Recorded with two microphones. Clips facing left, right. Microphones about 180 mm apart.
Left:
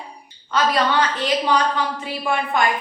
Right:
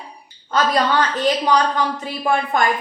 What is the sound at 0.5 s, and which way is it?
Speech, 45° right (ahead or behind).